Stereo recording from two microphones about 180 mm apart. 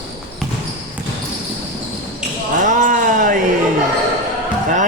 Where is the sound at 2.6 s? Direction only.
45° right (ahead or behind).